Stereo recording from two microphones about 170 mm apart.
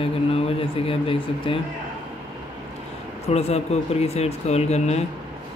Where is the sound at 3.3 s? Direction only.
40° left (ahead or behind).